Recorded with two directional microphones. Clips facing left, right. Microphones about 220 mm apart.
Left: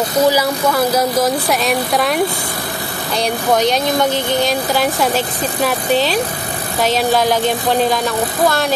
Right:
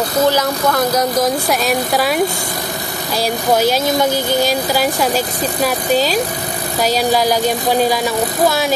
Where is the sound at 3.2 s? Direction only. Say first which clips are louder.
Even; 5° right (ahead or behind).